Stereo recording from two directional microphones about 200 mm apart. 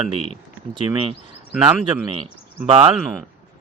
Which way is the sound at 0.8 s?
20° right (ahead or behind).